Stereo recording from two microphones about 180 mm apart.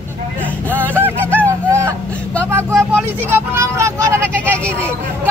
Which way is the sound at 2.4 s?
15° right (ahead or behind).